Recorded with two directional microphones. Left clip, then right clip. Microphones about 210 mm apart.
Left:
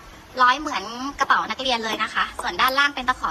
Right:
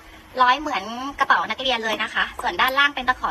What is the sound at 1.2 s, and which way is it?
A woman's voice, 10° left (ahead or behind).